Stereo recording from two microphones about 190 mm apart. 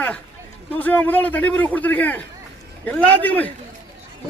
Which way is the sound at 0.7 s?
10° left (ahead or behind).